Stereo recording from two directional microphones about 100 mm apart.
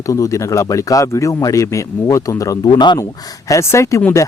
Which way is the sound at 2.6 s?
50° left (ahead or behind).